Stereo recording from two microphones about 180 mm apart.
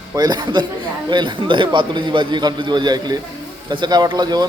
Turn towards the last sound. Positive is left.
turn(degrees=-25)  # may be behind; listen again after turning